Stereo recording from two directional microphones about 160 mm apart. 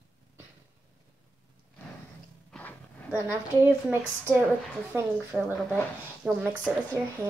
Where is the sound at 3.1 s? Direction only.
10° right (ahead or behind).